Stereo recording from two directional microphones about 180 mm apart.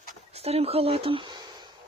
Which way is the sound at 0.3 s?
35° right (ahead or behind).